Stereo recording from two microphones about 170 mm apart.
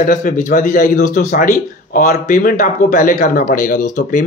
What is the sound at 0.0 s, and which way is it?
Speech, 45° left (ahead or behind).